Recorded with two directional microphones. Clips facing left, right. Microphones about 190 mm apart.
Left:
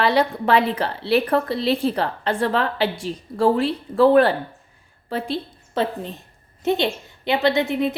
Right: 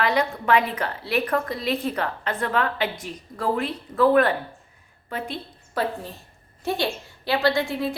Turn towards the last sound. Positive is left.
turn(degrees=20)  # may be behind; listen again after turning